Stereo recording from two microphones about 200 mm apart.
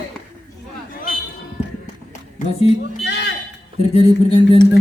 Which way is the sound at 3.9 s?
25° left (ahead or behind).